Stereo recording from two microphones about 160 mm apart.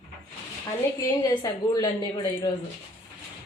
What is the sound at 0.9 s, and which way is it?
A woman's voice, 20° left (ahead or behind).